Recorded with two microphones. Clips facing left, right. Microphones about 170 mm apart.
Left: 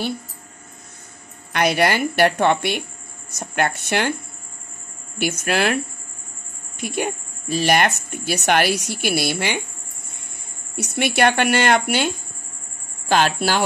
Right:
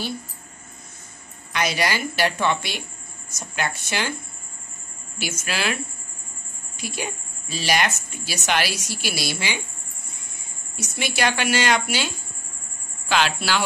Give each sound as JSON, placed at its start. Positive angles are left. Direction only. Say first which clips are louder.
{"t": 1.5, "sound": "speech", "louder": "left 6 dB", "side_deg": 60}
{"t": 5.2, "sound": "speech", "louder": "left 7 dB", "side_deg": 60}
{"t": 6.8, "sound": "speech", "louder": "left 7 dB", "side_deg": 55}
{"t": 10.8, "sound": "speech", "louder": "left 6 dB", "side_deg": 60}
{"t": 13.1, "sound": "speech", "louder": "left 4 dB", "side_deg": 45}